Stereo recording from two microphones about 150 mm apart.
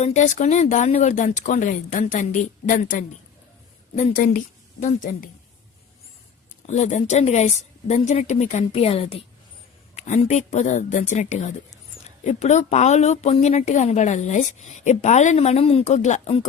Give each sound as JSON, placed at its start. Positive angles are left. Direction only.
{"t": 0.0, "sound": "a woman's voice", "side_deg": 50}
{"t": 6.7, "sound": "speech", "side_deg": 50}